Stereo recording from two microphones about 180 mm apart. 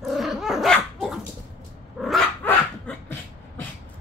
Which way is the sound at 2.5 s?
10° left (ahead or behind).